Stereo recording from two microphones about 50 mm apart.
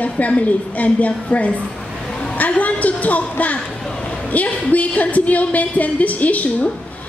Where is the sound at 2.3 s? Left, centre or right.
Left.